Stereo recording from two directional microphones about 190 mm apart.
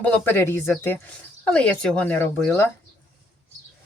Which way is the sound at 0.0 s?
10° left (ahead or behind).